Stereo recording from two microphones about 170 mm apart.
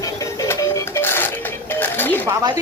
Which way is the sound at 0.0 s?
15° left (ahead or behind).